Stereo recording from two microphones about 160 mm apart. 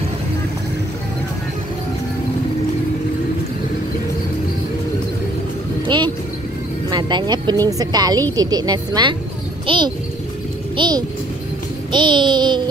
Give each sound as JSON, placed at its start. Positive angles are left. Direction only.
{"t": 5.9, "sound": "music", "side_deg": -30}
{"t": 6.9, "sound": "a woman's voice", "side_deg": -25}